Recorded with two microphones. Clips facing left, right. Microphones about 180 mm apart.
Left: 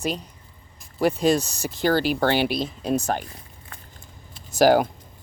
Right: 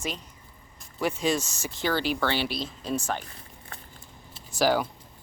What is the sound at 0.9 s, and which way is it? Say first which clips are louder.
Speech: left 6 dB; 35° left (ahead or behind).